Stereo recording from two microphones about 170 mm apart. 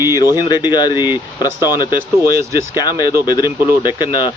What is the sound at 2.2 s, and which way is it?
Speech, 60° right (ahead or behind).